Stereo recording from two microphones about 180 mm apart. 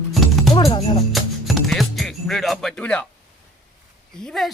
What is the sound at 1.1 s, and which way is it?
Speech, centre (ahead or behind).